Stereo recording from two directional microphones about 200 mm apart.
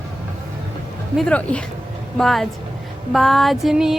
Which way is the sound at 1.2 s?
5° left (ahead or behind).